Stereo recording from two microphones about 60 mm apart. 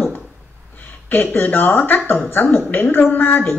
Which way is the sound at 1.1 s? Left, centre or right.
Left.